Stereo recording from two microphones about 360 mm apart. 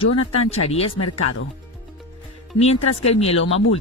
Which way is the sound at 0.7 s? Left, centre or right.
Centre.